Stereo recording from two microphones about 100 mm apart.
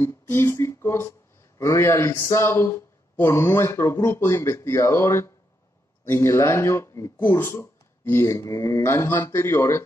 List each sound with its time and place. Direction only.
0.0 s speech: 25° left (ahead or behind)